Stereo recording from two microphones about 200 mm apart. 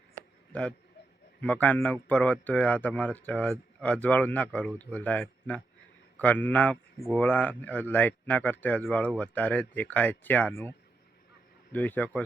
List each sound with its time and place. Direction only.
1.4 s a man's voice: 10° left (ahead or behind)